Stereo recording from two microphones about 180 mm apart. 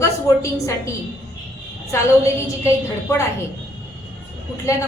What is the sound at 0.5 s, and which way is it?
A woman's voice, 15° left (ahead or behind).